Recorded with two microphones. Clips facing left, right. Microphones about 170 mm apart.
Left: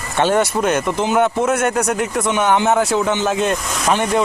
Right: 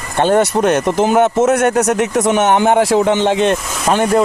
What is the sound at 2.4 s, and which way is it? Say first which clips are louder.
Speech: right 1 dB; 55° right (ahead or behind).